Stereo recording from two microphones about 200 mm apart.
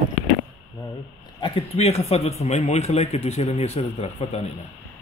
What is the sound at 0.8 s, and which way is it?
A man's voice, 25° left (ahead or behind).